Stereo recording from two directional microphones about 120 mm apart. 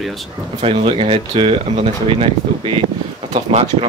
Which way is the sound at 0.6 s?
55° right (ahead or behind).